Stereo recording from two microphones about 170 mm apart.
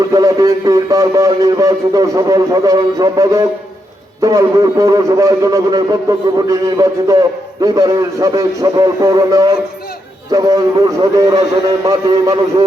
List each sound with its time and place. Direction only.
0.0 s a man's voice: 20° right (ahead or behind)